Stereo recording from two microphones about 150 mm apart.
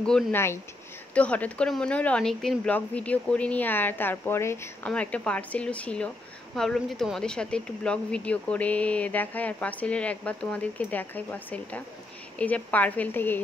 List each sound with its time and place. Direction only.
0.0 s speech: 5° left (ahead or behind)